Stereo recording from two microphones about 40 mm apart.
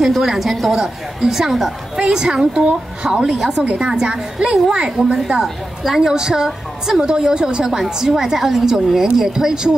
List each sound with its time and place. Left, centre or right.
0.0 s a woman's voice: centre
2.0 s a woman's voice: centre
4.8 s a woman's voice: centre